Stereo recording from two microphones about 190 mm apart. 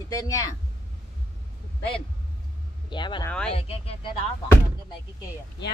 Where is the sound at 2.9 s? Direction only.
25° left (ahead or behind).